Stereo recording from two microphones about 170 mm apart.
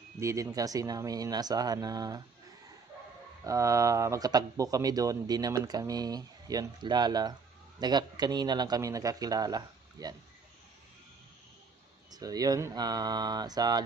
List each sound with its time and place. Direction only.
0.2 s speech: 20° right (ahead or behind)
12.1 s speech: 20° right (ahead or behind)